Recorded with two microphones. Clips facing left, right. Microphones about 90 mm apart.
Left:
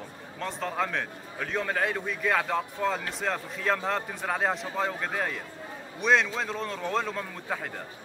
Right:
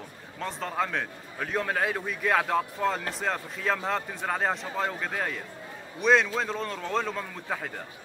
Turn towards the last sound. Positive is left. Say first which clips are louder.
# even
turn(degrees=0)  # may be behind; listen again after turning